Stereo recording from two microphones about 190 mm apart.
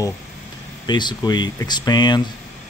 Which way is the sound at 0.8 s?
25° left (ahead or behind).